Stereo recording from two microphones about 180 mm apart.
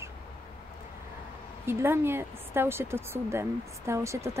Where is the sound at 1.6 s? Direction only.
15° right (ahead or behind).